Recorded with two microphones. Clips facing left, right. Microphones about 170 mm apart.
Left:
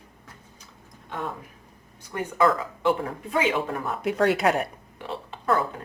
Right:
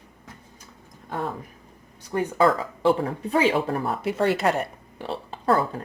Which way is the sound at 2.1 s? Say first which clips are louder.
Right 2 dB; 30° right (ahead or behind).